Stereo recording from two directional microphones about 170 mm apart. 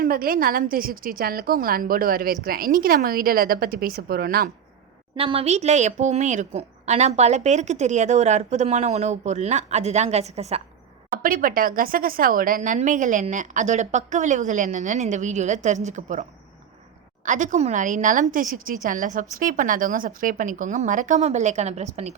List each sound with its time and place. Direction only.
0.0 s a woman's voice: 60° right (ahead or behind)
5.1 s a woman's voice: 35° right (ahead or behind)
11.2 s speech: 55° right (ahead or behind)
17.2 s speech: 50° right (ahead or behind)